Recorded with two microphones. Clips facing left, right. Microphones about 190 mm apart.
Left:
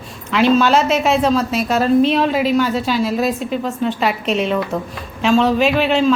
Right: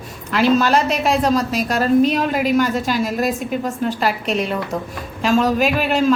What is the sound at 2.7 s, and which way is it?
Speech, 45° right (ahead or behind).